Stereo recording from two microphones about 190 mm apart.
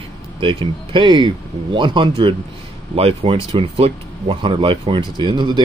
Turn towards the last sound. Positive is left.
turn(degrees=-25)  # may be behind; listen again after turning